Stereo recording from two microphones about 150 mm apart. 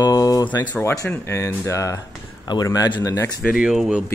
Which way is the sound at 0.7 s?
15° left (ahead or behind).